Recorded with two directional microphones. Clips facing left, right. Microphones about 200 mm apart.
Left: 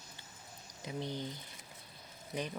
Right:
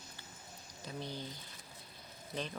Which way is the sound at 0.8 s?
20° left (ahead or behind).